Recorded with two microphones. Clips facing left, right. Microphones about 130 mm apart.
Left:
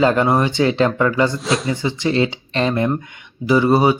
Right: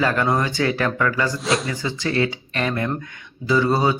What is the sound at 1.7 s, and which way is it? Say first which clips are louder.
Speech: left 4 dB; 20° left (ahead or behind).